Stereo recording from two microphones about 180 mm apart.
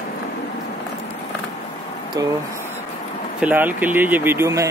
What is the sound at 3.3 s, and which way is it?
Speech, 10° right (ahead or behind).